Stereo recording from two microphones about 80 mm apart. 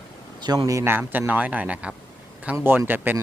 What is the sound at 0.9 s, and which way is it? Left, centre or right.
Speech, right.